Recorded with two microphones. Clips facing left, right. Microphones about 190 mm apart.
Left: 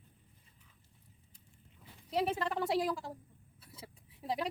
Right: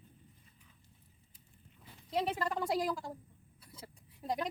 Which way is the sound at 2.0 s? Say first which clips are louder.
Left 1 dB; 5° left (ahead or behind).